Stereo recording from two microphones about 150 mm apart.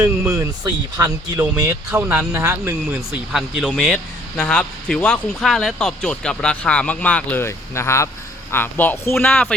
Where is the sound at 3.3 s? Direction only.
5° right (ahead or behind).